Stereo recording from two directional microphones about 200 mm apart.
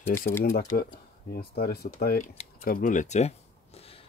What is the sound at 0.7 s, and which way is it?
Speech, 50° left (ahead or behind).